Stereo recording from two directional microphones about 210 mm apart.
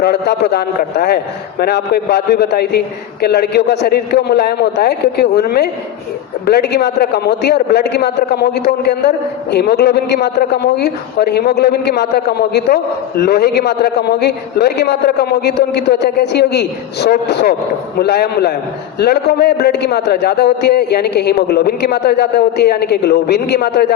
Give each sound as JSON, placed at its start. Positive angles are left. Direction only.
{"t": 0.0, "sound": "a man's voice", "side_deg": 50}